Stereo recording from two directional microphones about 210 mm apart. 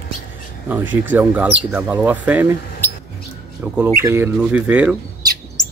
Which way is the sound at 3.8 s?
15° right (ahead or behind).